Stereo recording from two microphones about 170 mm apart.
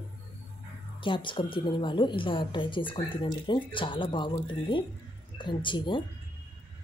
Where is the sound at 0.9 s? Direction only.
30° left (ahead or behind).